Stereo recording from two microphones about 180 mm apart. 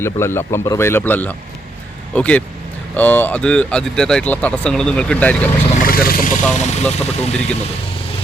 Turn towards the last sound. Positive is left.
turn(degrees=35)  # may be behind; listen again after turning